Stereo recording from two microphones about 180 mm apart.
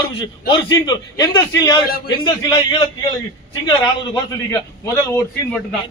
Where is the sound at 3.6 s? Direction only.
20° left (ahead or behind).